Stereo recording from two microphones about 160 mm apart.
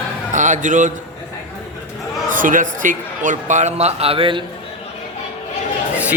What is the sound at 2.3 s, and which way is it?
A man's voice, 55° right (ahead or behind).